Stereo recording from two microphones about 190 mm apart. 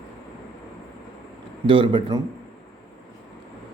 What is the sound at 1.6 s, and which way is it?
Speech, 25° right (ahead or behind).